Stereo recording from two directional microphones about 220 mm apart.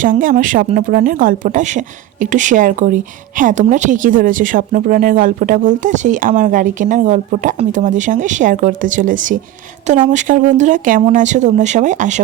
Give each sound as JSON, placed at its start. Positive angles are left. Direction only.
{"t": 0.0, "sound": "speech", "side_deg": -40}